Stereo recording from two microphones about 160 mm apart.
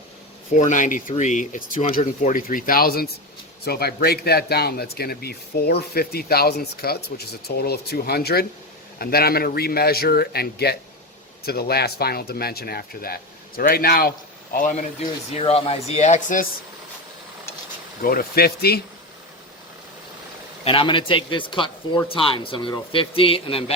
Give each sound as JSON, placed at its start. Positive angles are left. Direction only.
{"t": 0.5, "sound": "speech", "side_deg": 55}
{"t": 9.0, "sound": "speech", "side_deg": 70}
{"t": 14.5, "sound": "speech", "side_deg": 55}
{"t": 15.4, "sound": "speech", "side_deg": 40}
{"t": 18.0, "sound": "speech", "side_deg": 65}
{"t": 20.7, "sound": "speech", "side_deg": 30}